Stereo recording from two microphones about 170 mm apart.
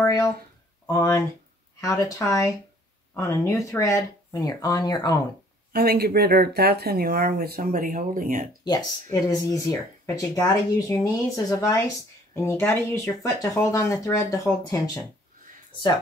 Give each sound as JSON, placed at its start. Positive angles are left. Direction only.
{"t": 0.0, "sound": "a sound", "side_deg": 20}
{"t": 0.8, "sound": "speech", "side_deg": 20}
{"t": 5.7, "sound": "speech", "side_deg": -65}
{"t": 8.6, "sound": "speech", "side_deg": 25}